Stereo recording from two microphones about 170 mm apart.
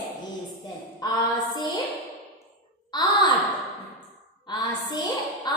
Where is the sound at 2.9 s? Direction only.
25° left (ahead or behind).